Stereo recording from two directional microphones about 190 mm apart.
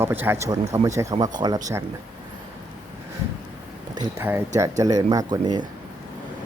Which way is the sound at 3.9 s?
20° right (ahead or behind).